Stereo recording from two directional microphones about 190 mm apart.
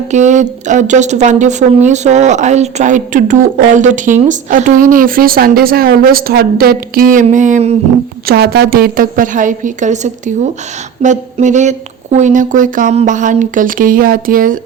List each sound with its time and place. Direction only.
0.1 s a woman's voice: 40° right (ahead or behind)
8.3 s a woman's voice: 55° right (ahead or behind)